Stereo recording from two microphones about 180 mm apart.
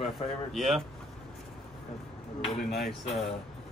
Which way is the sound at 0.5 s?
Centre (ahead or behind).